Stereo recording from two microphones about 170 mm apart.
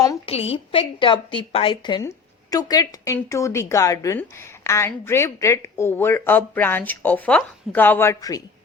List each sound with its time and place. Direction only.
0.3 s a woman's voice: 35° left (ahead or behind); by 8.4 s 20° left (ahead or behind)